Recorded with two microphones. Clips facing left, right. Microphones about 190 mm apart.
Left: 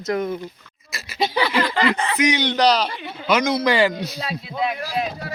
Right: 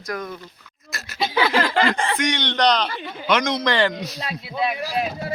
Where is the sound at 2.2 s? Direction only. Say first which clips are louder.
Left 5 dB; 5° left (ahead or behind).